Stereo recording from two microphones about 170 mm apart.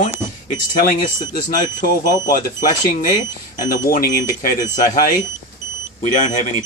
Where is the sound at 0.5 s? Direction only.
50° left (ahead or behind).